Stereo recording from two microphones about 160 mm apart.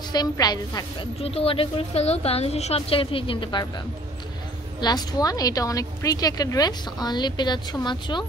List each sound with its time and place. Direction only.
0.1 s a woman's voice: 25° left (ahead or behind)
1.2 s a woman's voice: 35° left (ahead or behind)
4.7 s a woman's voice: 25° left (ahead or behind)